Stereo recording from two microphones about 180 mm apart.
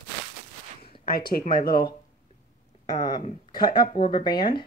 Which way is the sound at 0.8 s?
25° left (ahead or behind).